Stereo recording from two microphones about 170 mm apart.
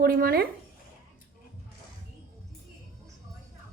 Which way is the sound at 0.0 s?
60° right (ahead or behind).